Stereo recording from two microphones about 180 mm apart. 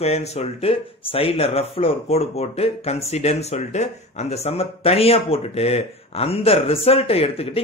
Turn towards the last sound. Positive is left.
turn(degrees=35)  # may be behind; listen again after turning